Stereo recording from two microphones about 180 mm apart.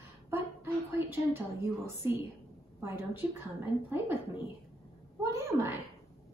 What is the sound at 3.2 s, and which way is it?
Speech, 10° right (ahead or behind).